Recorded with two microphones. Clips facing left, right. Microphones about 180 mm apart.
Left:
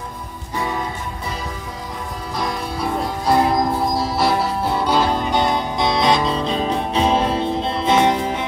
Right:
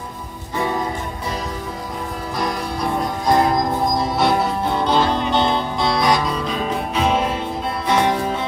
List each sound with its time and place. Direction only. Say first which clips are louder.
2.3 s music: even; centre (ahead or behind); by 8.5 s 20° left (ahead or behind)